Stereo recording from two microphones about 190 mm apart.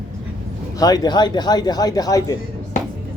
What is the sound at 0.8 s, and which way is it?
A man's voice, 20° left (ahead or behind).